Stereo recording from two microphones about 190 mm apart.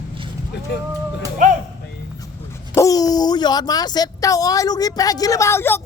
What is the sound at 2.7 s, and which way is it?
Speech, 20° left (ahead or behind).